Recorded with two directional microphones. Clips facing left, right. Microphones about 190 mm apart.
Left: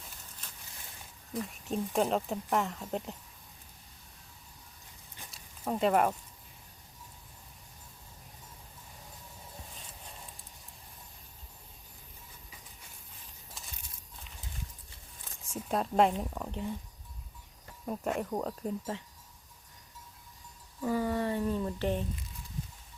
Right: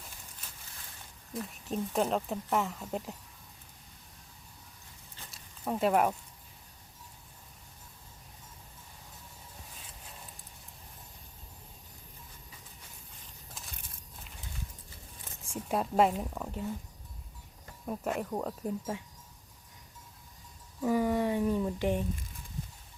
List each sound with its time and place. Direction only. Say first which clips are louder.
0.4 s a sound: left 1 dB; 5° right (ahead or behind)
1.3 s speech: left 1 dB; centre (ahead or behind)
5.3 s a sound: even; centre (ahead or behind)
15.7 s speech: even; 5° right (ahead or behind)
17.8 s speech: left 1 dB; centre (ahead or behind)
20.8 s speech: right 3 dB; 15° right (ahead or behind)